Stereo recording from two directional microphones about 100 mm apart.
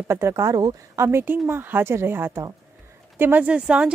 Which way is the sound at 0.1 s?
30° right (ahead or behind).